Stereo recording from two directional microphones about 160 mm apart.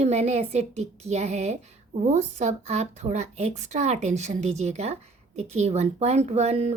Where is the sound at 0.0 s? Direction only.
45° right (ahead or behind).